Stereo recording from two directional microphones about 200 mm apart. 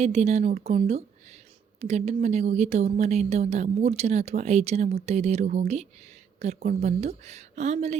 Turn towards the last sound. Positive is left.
turn(degrees=-35)  # may be behind; listen again after turning